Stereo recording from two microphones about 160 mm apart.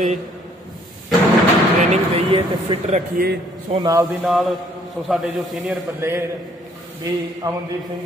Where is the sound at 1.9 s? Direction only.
40° right (ahead or behind).